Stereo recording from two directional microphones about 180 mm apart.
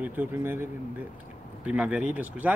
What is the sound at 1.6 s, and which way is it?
Speech, 5° right (ahead or behind).